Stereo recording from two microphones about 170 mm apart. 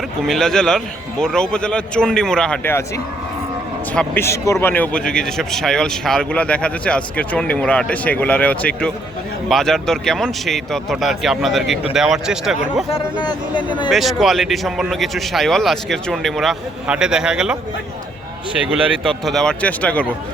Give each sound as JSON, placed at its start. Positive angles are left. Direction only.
{"t": 0.2, "sound": "speech", "side_deg": 0}
{"t": 3.9, "sound": "a man's voice", "side_deg": 15}
{"t": 13.2, "sound": "speech", "side_deg": 25}
{"t": 13.9, "sound": "speech", "side_deg": 0}
{"t": 19.0, "sound": "a man's voice", "side_deg": 0}